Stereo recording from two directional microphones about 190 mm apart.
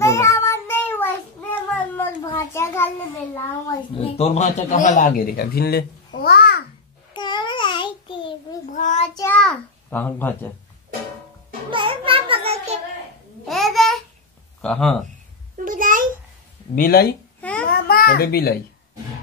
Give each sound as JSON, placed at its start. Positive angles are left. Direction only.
{"t": 0.0, "sound": "child singing", "side_deg": 15}
{"t": 2.3, "sound": "a sound", "side_deg": 15}
{"t": 4.2, "sound": "a man's voice", "side_deg": 35}
{"t": 7.2, "sound": "child singing", "side_deg": 25}
{"t": 8.6, "sound": "child singing", "side_deg": 40}
{"t": 9.1, "sound": "a child's voice", "side_deg": 15}
{"t": 11.7, "sound": "a sound", "side_deg": -25}
{"t": 13.5, "sound": "babbling", "side_deg": 0}
{"t": 14.6, "sound": "speech", "side_deg": 5}
{"t": 15.5, "sound": "a sound", "side_deg": -45}
{"t": 16.7, "sound": "a child's voice", "side_deg": 50}
{"t": 17.4, "sound": "babbling", "side_deg": 5}
{"t": 17.6, "sound": "a child's voice", "side_deg": 50}